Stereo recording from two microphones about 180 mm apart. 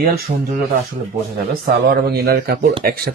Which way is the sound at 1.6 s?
60° right (ahead or behind).